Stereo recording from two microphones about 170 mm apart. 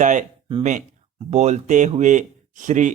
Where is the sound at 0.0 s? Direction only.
50° right (ahead or behind).